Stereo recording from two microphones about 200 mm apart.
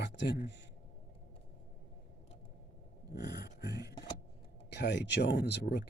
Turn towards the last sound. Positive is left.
turn(degrees=60)  # may be behind; listen again after turning